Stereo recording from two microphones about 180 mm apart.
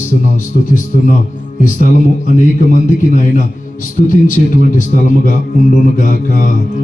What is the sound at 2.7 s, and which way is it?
A man's voice, 45° left (ahead or behind).